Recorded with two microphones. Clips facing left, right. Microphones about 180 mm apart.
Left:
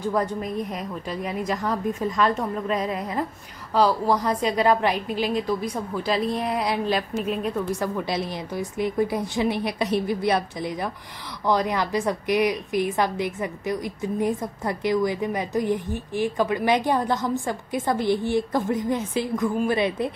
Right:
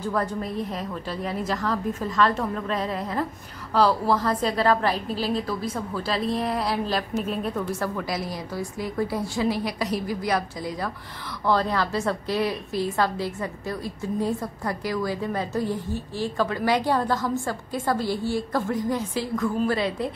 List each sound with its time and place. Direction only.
0.1 s a woman's voice: 15° left (ahead or behind)
4.9 s a woman's voice: 35° right (ahead or behind)
5.2 s a woman's voice: 15° left (ahead or behind)
6.1 s a woman's voice: centre (ahead or behind)
7.5 s a woman's voice: 20° left (ahead or behind)